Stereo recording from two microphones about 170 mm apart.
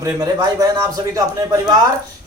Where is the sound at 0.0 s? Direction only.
20° right (ahead or behind).